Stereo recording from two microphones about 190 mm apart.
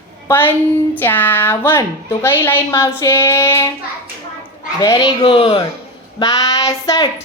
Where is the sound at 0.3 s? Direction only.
10° left (ahead or behind).